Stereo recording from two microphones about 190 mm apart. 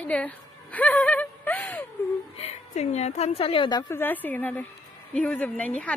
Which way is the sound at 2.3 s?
35° left (ahead or behind).